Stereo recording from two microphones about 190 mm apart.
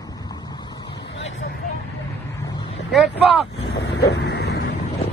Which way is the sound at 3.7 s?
60° left (ahead or behind).